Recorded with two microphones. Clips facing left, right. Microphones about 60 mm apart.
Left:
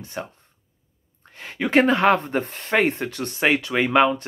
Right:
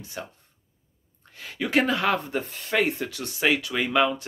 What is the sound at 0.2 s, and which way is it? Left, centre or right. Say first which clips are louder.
Speech: left 5 dB; left.